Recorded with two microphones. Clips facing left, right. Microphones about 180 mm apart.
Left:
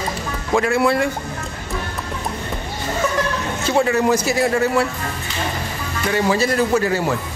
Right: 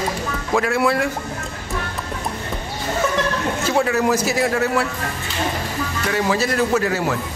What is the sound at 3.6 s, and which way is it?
Speech, centre (ahead or behind).